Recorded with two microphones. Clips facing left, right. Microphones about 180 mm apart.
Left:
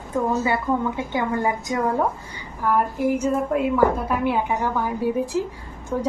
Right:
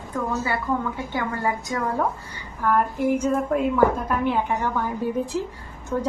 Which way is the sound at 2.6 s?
5° left (ahead or behind).